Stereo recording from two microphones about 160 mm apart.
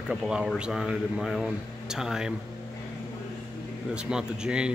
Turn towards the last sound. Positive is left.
turn(degrees=-5)  # may be behind; listen again after turning